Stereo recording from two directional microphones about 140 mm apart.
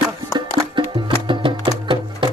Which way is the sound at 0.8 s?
35° right (ahead or behind).